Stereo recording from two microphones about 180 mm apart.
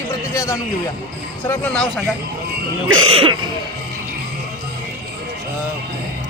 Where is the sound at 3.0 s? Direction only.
30° right (ahead or behind).